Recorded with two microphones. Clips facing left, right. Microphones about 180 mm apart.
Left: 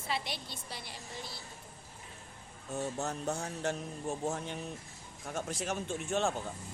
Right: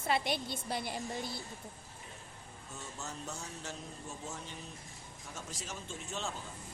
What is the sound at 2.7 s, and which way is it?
Music, 55° left (ahead or behind).